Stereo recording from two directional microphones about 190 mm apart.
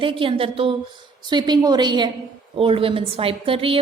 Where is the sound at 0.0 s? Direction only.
25° right (ahead or behind).